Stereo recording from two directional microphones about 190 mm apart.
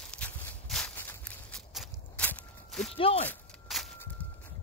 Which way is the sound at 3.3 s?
Centre (ahead or behind).